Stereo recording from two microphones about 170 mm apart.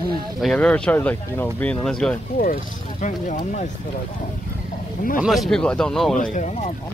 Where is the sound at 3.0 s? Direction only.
45° left (ahead or behind).